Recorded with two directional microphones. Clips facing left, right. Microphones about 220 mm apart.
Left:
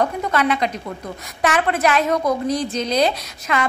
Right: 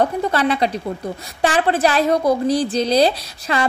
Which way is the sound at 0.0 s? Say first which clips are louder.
Right 2 dB; 30° right (ahead or behind).